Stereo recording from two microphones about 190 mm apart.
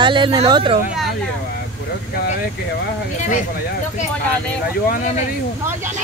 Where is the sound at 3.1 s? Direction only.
40° left (ahead or behind).